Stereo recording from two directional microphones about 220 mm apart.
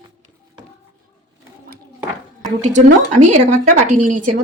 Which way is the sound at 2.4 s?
35° right (ahead or behind).